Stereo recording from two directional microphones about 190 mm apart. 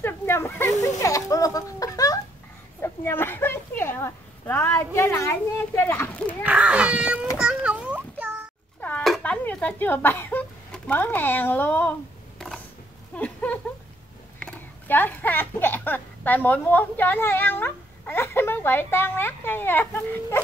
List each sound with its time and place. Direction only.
0.0 s snake: 10° left (ahead or behind)
0.8 s a child's voice: 15° left (ahead or behind)
6.4 s speech: 5° right (ahead or behind)
7.3 s a sound: 5° right (ahead or behind)
8.8 s speech: 5° left (ahead or behind)
12.4 s a sound: 5° left (ahead or behind)
14.4 s speech: 10° left (ahead or behind)